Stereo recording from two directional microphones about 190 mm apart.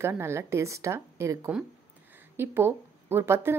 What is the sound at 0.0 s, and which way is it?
Speech, 15° right (ahead or behind).